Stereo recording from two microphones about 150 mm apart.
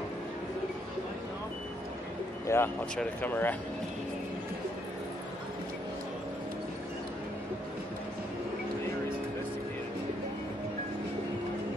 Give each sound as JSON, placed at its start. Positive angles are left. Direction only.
{"t": 2.4, "sound": "speech", "side_deg": 15}